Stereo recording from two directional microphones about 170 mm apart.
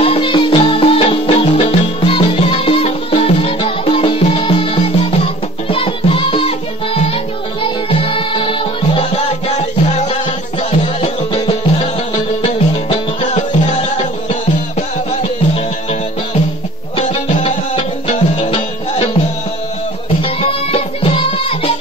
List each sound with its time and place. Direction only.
0.0 s music: 30° left (ahead or behind)
17.0 s music: 40° left (ahead or behind)
20.2 s music: 35° left (ahead or behind)